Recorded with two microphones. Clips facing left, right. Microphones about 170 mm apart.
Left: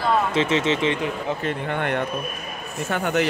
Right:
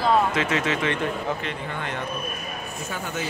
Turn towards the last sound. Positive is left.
turn(degrees=65)  # may be behind; listen again after turning